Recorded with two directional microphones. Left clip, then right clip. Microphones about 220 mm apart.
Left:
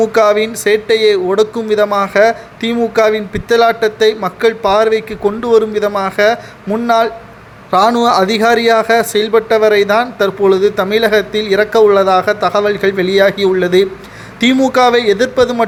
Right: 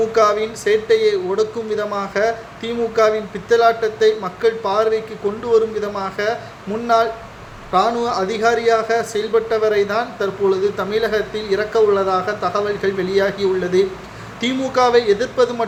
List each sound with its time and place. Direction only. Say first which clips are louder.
0.0 s speech: left 5 dB; 40° left (ahead or behind)